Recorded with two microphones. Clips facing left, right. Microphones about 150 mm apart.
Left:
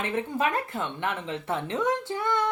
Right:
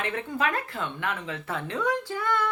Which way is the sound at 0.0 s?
20° left (ahead or behind).